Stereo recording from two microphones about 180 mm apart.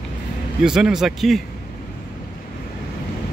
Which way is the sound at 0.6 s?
5° right (ahead or behind).